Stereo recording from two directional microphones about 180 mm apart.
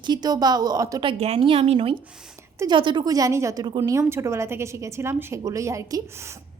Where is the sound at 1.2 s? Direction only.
35° right (ahead or behind).